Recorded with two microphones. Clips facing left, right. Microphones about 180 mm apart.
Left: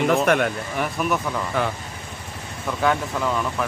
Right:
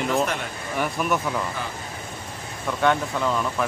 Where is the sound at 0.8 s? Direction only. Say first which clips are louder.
Even; centre (ahead or behind).